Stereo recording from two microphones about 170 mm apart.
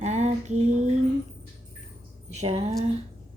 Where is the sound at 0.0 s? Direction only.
40° right (ahead or behind).